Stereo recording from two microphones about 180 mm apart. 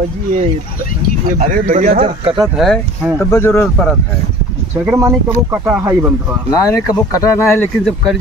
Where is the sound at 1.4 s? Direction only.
45° right (ahead or behind).